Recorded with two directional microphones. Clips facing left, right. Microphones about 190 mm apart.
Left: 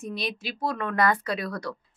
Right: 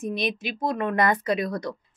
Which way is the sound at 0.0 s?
20° right (ahead or behind).